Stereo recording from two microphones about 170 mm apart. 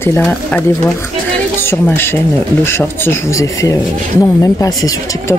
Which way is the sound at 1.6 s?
15° left (ahead or behind).